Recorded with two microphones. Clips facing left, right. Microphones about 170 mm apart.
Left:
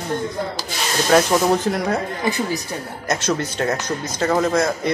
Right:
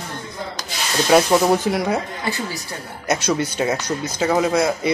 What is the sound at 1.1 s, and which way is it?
Speech, 5° right (ahead or behind).